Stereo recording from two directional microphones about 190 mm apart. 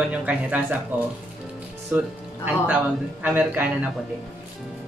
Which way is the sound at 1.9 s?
10° right (ahead or behind).